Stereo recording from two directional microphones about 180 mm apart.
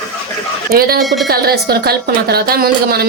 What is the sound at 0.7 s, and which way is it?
Speech, 55° right (ahead or behind).